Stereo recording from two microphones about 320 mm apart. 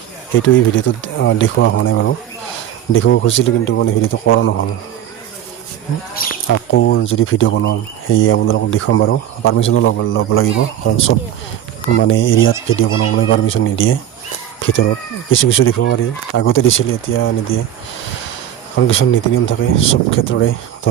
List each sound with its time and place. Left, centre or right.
0.3 s speech: left
6.1 s speech: left
11.9 s speech: left
18.9 s speech: left